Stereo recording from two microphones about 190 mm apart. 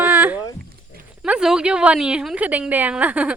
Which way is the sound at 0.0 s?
10° right (ahead or behind).